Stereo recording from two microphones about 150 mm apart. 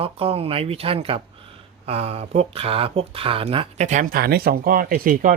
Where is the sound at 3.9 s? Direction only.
60° right (ahead or behind).